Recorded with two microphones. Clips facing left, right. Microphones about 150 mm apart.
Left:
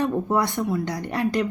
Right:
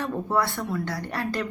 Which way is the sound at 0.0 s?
20° left (ahead or behind).